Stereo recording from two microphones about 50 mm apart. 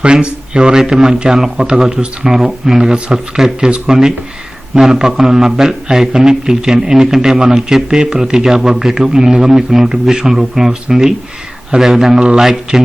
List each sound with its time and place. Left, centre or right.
0.0 s a man's voice: centre